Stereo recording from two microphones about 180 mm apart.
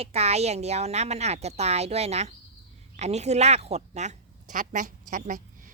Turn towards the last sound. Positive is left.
turn(degrees=-45)  # may be behind; listen again after turning